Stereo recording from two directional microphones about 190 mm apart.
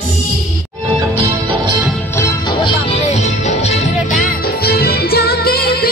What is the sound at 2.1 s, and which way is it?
Music, 20° left (ahead or behind).